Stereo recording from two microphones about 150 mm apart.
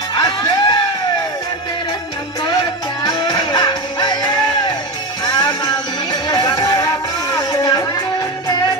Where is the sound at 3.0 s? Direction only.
30° left (ahead or behind).